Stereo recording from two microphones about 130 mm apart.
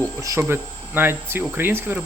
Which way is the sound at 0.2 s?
20° right (ahead or behind).